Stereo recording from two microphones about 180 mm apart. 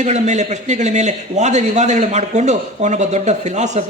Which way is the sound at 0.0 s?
40° right (ahead or behind).